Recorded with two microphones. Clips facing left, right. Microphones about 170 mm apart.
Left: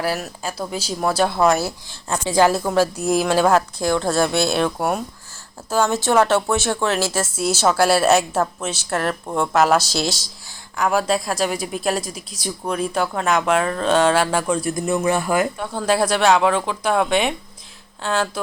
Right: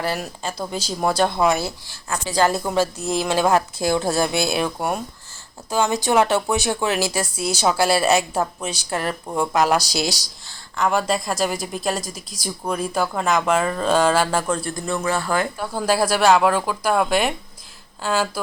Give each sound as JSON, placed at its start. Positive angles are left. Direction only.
{"t": 0.0, "sound": "a woman's voice", "side_deg": 5}
{"t": 2.0, "sound": "a woman's voice", "side_deg": 25}
{"t": 2.4, "sound": "a woman's voice", "side_deg": 5}
{"t": 3.4, "sound": "a woman's voice", "side_deg": -10}
{"t": 6.3, "sound": "speech", "side_deg": -15}
{"t": 7.3, "sound": "a woman's voice", "side_deg": 5}
{"t": 14.7, "sound": "speech", "side_deg": 20}
{"t": 15.5, "sound": "a woman's voice", "side_deg": -5}